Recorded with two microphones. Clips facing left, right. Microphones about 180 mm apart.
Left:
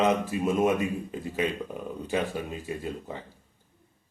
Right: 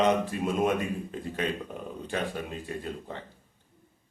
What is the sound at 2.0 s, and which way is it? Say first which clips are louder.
A man's voice: left 3 dB; 5° left (ahead or behind).